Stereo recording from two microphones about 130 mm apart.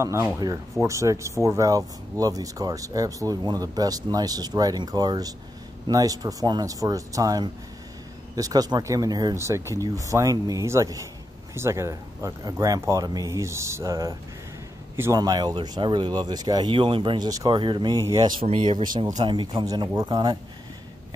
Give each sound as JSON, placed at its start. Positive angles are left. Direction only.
{"t": 0.0, "sound": "speech", "side_deg": -20}
{"t": 15.1, "sound": "speech", "side_deg": -30}